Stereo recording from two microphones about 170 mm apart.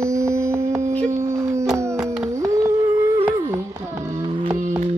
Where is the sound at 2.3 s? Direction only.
15° right (ahead or behind).